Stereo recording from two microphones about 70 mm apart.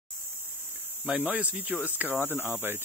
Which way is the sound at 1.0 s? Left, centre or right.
Centre.